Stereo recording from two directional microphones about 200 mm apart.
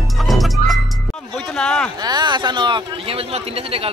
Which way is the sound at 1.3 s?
5° left (ahead or behind).